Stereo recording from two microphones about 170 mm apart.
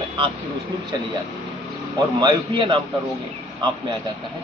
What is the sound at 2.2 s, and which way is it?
Speech, 30° right (ahead or behind).